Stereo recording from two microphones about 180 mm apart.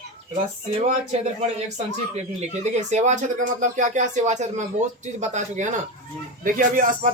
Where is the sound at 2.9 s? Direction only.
40° right (ahead or behind).